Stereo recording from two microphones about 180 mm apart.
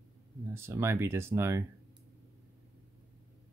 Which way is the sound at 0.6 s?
15° right (ahead or behind).